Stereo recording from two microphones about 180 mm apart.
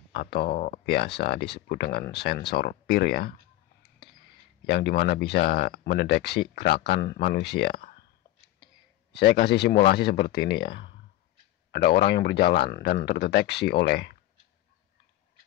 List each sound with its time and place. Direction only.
0.1 s speech: 65° left (ahead or behind)
3.8 s a sound: 65° left (ahead or behind)
5.0 s speech: 65° left (ahead or behind)
9.1 s speech: 65° left (ahead or behind)
10.7 s speech: 30° left (ahead or behind)
11.7 s speech: 60° left (ahead or behind)